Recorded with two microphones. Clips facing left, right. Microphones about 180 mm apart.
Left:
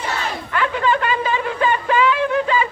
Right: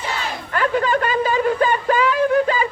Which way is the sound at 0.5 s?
45° right (ahead or behind).